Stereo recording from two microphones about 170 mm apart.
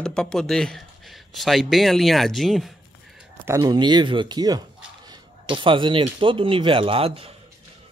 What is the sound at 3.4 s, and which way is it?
Speech, 20° right (ahead or behind).